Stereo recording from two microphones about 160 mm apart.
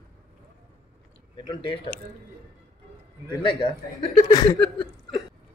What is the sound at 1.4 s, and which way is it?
Speech, 25° left (ahead or behind).